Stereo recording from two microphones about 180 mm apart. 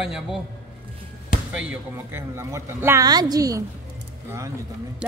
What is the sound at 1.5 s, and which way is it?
A woman's voice, 10° right (ahead or behind).